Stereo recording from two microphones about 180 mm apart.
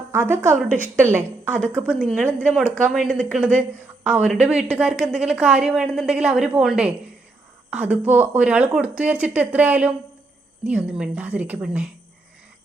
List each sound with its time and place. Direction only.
0.1 s a woman's voice: 15° right (ahead or behind)
2.2 s speech: 10° left (ahead or behind)
2.9 s a woman's voice: 5° right (ahead or behind)